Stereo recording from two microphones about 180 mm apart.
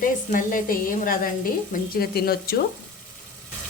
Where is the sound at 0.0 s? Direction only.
50° left (ahead or behind).